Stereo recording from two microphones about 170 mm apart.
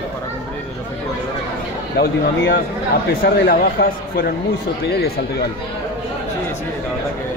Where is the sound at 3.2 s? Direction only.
60° left (ahead or behind).